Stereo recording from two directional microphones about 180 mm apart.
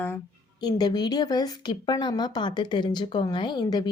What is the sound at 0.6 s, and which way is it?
Speech, 20° left (ahead or behind).